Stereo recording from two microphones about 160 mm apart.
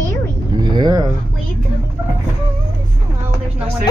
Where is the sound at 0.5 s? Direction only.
25° right (ahead or behind).